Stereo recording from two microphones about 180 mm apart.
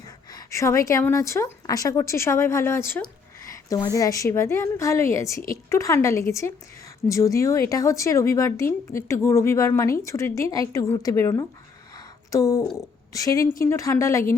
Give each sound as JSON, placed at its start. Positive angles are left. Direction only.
{"t": 0.3, "sound": "a woman's voice", "side_deg": 20}
{"t": 11.9, "sound": "a sound", "side_deg": 20}
{"t": 13.1, "sound": "a woman's voice", "side_deg": 20}